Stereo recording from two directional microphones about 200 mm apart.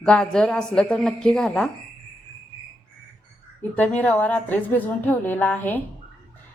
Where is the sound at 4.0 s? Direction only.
5° left (ahead or behind).